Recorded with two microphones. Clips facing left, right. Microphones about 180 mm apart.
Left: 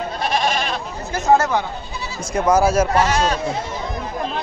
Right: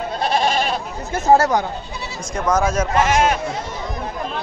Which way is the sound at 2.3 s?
10° left (ahead or behind).